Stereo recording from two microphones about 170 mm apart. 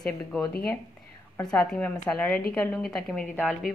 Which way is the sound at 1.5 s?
5° left (ahead or behind).